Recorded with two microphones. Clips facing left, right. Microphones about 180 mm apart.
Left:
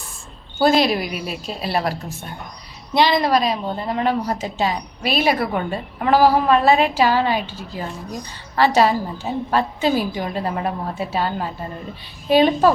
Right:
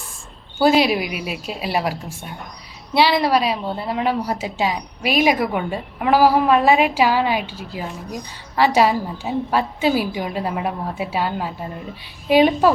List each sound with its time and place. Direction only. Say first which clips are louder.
0.6 s a woman's voice: right 1 dB; 10° right (ahead or behind)